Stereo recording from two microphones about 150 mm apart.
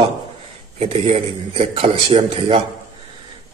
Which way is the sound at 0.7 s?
45° right (ahead or behind).